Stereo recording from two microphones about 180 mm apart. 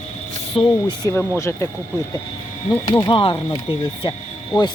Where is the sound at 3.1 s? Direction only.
30° left (ahead or behind).